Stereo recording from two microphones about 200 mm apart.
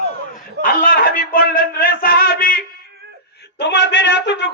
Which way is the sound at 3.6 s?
60° left (ahead or behind).